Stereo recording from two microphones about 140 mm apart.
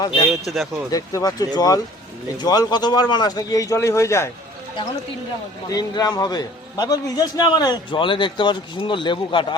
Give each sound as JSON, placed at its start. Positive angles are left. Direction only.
{"t": 0.3, "sound": "speech", "side_deg": 0}
{"t": 0.9, "sound": "speech", "side_deg": 25}
{"t": 5.6, "sound": "a man's voice", "side_deg": 25}